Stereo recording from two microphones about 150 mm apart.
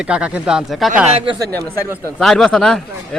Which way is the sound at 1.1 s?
40° right (ahead or behind).